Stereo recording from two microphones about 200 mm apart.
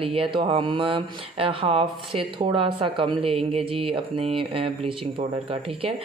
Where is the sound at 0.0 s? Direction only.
25° right (ahead or behind).